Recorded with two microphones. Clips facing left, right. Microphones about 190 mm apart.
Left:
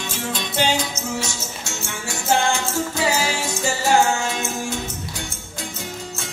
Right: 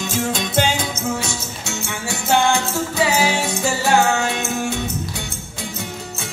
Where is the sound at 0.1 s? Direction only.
45° right (ahead or behind).